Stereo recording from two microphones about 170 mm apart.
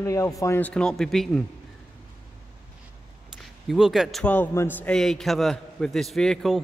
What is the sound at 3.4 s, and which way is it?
A man's voice, centre (ahead or behind).